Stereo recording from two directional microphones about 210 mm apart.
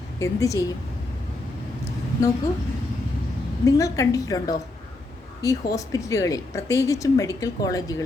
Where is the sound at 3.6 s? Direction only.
15° left (ahead or behind).